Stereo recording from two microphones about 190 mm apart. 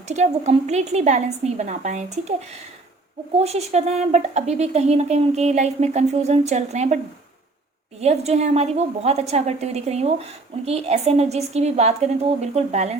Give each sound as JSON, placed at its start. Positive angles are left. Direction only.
{"t": 0.1, "sound": "a woman's voice", "side_deg": -35}
{"t": 3.3, "sound": "a woman's voice", "side_deg": -35}
{"t": 8.0, "sound": "a woman's voice", "side_deg": -35}